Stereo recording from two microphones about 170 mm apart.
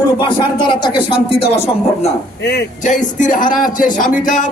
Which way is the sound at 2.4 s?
80° left.